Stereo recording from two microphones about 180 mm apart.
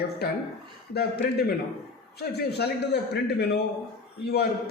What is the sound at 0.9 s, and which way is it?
A man's voice, 60° left (ahead or behind).